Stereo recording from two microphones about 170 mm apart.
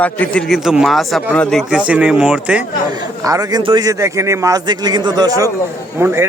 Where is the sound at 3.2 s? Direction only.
20° right (ahead or behind).